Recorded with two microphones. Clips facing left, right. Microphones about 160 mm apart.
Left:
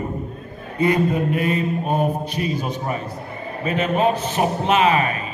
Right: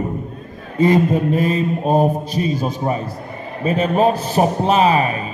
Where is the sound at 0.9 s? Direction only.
35° right (ahead or behind).